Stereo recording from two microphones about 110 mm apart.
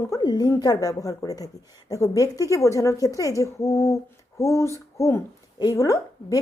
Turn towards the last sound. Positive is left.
turn(degrees=30)  # may be behind; listen again after turning